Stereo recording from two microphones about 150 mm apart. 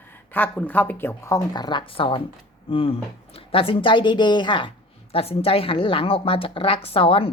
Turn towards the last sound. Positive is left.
turn(degrees=35)  # may be behind; listen again after turning